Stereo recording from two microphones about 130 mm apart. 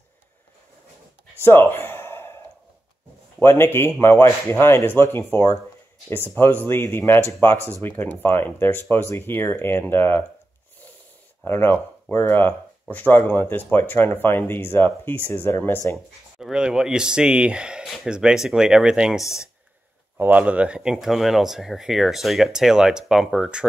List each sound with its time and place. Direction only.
1.4 s a sound: 15° left (ahead or behind)
3.3 s speech: 20° left (ahead or behind)
11.4 s speech: 15° left (ahead or behind)
16.3 s speech: 5° right (ahead or behind)